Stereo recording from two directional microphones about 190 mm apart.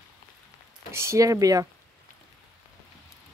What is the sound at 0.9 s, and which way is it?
Speech, 15° right (ahead or behind).